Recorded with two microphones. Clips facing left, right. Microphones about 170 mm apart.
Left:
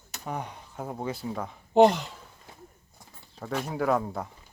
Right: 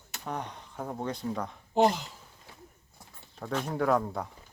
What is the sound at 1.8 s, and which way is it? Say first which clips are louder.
Speech: left 6 dB; 65° left (ahead or behind).